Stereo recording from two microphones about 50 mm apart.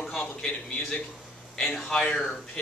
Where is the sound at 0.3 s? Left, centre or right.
Centre.